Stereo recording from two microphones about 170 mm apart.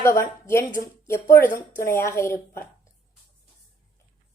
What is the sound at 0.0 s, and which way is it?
A woman's voice, 15° left (ahead or behind).